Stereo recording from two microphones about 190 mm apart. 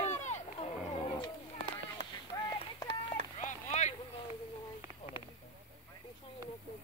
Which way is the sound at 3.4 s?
40° left (ahead or behind).